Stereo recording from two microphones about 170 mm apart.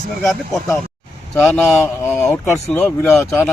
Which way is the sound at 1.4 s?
10° left (ahead or behind).